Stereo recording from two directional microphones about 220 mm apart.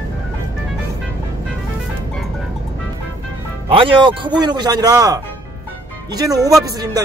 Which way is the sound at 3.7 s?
25° right (ahead or behind).